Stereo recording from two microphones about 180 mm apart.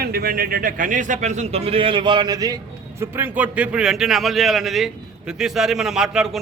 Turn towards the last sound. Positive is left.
turn(degrees=-5)  # may be behind; listen again after turning